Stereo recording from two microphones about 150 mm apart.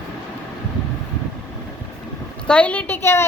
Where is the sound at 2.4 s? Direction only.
10° left (ahead or behind).